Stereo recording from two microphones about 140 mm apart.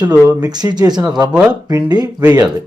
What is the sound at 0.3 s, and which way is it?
Speech, 30° right (ahead or behind).